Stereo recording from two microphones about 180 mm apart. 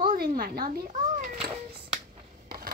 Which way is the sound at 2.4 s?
55° right (ahead or behind).